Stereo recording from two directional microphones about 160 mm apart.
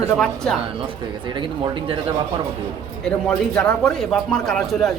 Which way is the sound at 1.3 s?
30° right (ahead or behind).